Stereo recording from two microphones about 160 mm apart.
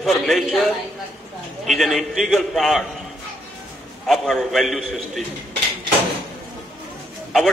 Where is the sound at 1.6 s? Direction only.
Centre (ahead or behind).